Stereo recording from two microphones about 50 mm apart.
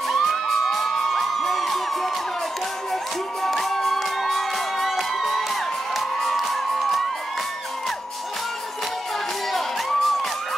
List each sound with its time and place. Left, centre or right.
0.1 s music: centre
3.4 s music: centre
9.5 s music: centre